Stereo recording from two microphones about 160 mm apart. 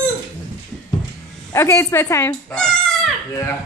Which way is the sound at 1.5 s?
15° left (ahead or behind).